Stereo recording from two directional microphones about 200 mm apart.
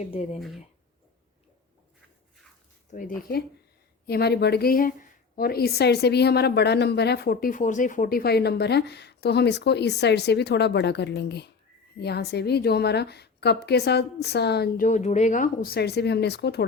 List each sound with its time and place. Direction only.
0.3 s speech: centre (ahead or behind)
2.9 s a woman's voice: 40° left (ahead or behind)
14.8 s a woman's voice: 35° left (ahead or behind); by 16.6 s 55° left (ahead or behind)